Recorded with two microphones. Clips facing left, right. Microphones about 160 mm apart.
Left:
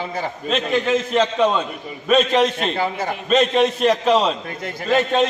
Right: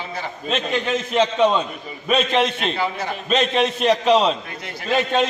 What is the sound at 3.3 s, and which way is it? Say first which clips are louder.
A man's voice: left 3 dB; centre (ahead or behind).